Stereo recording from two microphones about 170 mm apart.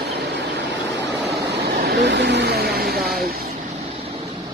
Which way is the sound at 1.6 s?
70° right (ahead or behind).